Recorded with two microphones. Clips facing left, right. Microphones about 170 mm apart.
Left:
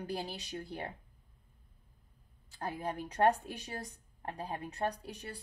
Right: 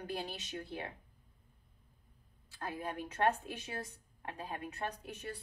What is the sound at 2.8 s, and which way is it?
A woman's voice, 35° left (ahead or behind).